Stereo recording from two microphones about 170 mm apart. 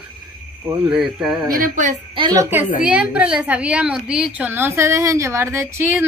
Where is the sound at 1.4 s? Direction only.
55° right (ahead or behind).